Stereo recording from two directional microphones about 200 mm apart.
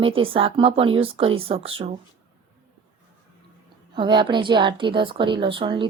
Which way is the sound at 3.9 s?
25° right (ahead or behind).